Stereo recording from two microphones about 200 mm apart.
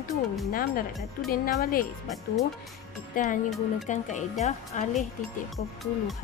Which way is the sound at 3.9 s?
35° left (ahead or behind).